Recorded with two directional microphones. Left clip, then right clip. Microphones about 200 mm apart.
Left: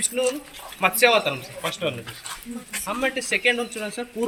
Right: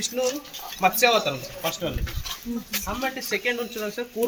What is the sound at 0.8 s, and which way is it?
Speech, 10° left (ahead or behind).